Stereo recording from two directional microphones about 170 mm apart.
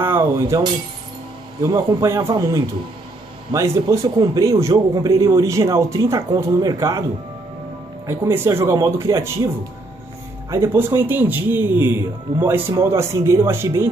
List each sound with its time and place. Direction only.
0.0 s a sound: 15° right (ahead or behind)
1.6 s a man's voice: 20° right (ahead or behind)
8.1 s speech: 15° right (ahead or behind)
10.5 s speech: 15° right (ahead or behind)